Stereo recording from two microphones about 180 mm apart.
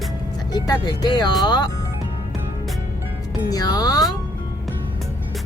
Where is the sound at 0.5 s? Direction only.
20° left (ahead or behind).